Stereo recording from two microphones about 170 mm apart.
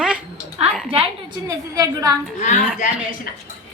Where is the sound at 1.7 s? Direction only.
20° right (ahead or behind).